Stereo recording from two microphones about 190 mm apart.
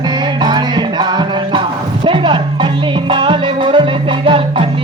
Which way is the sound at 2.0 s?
25° right (ahead or behind).